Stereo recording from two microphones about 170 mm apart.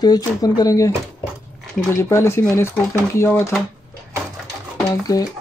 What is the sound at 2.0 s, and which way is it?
Speech, 15° left (ahead or behind).